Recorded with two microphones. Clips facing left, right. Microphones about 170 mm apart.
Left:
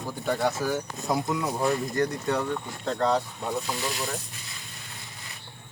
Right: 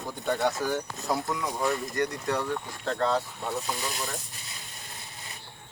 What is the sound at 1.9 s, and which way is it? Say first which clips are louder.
Speech: left 2 dB; 25° left (ahead or behind).